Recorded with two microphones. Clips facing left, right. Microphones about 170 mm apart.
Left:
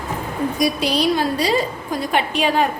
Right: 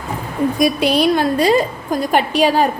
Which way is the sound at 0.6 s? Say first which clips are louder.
Right 4 dB; 55° right (ahead or behind).